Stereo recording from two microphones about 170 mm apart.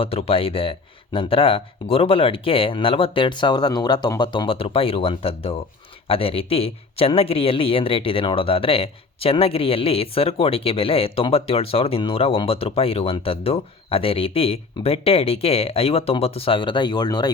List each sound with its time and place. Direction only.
0.0 s speech: 35° left (ahead or behind)